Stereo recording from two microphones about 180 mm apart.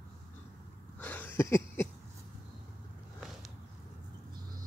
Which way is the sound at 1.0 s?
10° left (ahead or behind).